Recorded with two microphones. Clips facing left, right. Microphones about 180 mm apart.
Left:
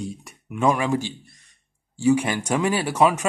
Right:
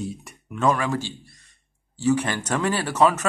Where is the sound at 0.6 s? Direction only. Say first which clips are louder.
Left 1 dB; 15° left (ahead or behind).